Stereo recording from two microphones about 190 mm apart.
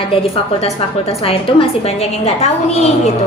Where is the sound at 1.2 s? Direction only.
30° left (ahead or behind).